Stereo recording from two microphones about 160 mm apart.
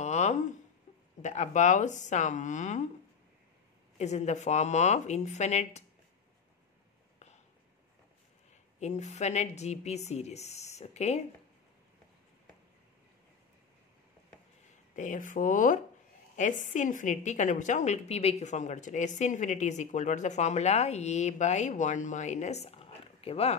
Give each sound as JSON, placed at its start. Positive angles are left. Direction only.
{"t": 0.0, "sound": "a sound", "side_deg": 45}
{"t": 1.2, "sound": "a woman's voice", "side_deg": 45}
{"t": 4.0, "sound": "a woman's voice", "side_deg": 45}
{"t": 8.7, "sound": "a woman's voice", "side_deg": 45}
{"t": 15.0, "sound": "a woman's voice", "side_deg": 55}